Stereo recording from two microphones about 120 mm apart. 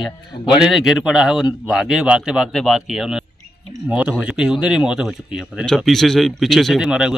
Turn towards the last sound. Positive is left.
turn(degrees=-5)  # may be behind; listen again after turning